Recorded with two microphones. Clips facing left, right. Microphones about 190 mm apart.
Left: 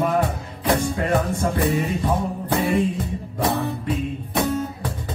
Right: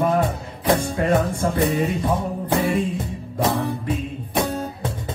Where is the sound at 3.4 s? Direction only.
25° right (ahead or behind).